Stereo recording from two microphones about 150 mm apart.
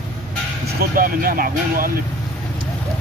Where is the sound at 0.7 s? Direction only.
70° right (ahead or behind).